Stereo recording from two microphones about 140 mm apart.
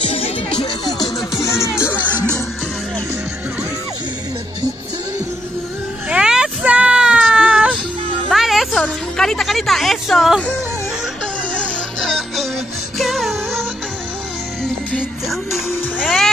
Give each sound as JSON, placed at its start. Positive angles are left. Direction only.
{"t": 0.0, "sound": "music", "side_deg": 45}
{"t": 0.9, "sound": "music", "side_deg": 25}
{"t": 6.0, "sound": "baby cry", "side_deg": -5}
{"t": 8.3, "sound": "music", "side_deg": 0}
{"t": 11.5, "sound": "music", "side_deg": 5}
{"t": 15.0, "sound": "music", "side_deg": -5}